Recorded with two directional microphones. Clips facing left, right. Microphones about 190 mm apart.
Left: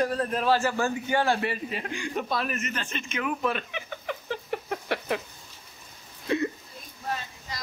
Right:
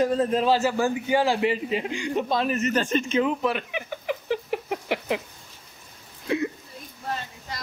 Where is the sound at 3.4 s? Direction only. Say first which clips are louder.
Right 3 dB; 10° right (ahead or behind).